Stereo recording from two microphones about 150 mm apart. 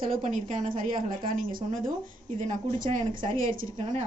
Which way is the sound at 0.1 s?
60° right (ahead or behind).